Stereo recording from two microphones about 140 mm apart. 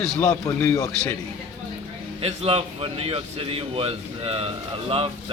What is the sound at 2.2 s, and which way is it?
Speech, 45° right (ahead or behind).